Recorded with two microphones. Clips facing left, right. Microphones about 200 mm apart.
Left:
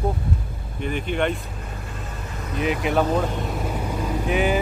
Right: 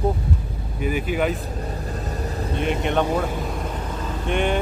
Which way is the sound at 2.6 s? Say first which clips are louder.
Left 1 dB; 5° left (ahead or behind).